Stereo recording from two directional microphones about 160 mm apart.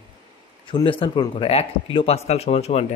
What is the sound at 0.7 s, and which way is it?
A man's voice, 30° left (ahead or behind).